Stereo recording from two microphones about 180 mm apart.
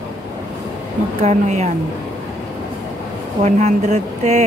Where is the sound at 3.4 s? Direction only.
40° right (ahead or behind).